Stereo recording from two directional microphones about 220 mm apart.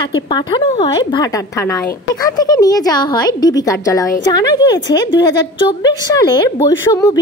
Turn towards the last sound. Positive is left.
turn(degrees=15)  # may be behind; listen again after turning